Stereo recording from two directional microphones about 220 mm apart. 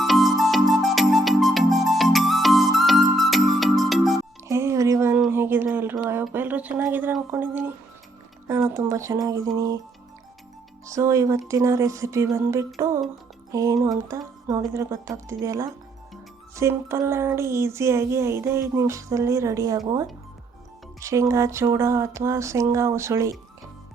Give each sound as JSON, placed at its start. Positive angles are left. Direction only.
{"t": 0.0, "sound": "music", "side_deg": 0}
{"t": 4.4, "sound": "a sound", "side_deg": -15}
{"t": 8.4, "sound": "speech", "side_deg": -10}
{"t": 10.8, "sound": "speech", "side_deg": -15}
{"t": 21.0, "sound": "speech", "side_deg": -15}